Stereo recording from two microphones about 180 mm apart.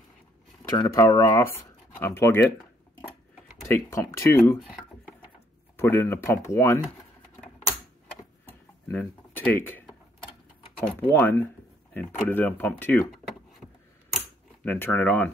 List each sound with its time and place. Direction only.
0.7 s speech: 20° left (ahead or behind)
3.6 s speech: 15° left (ahead or behind)
5.8 s speech: 10° left (ahead or behind)
8.5 s a sound: 10° left (ahead or behind)
10.8 s speech: 10° left (ahead or behind)
14.1 s typewriter: 10° left (ahead or behind)